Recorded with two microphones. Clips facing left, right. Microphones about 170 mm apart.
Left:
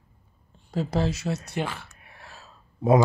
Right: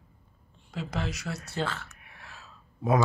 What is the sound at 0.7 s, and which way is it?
Speech, 35° left (ahead or behind).